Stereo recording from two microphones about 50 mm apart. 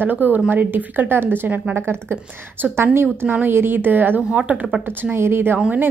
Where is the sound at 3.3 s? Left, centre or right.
Right.